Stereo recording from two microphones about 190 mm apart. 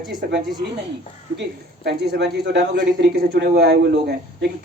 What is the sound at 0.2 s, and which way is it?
Speech, 55° right (ahead or behind).